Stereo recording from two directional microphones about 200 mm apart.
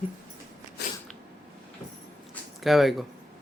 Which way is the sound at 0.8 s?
55° left (ahead or behind).